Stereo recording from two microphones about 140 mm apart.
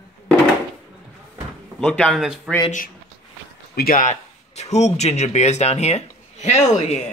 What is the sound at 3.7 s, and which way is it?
A man's voice, 90° left.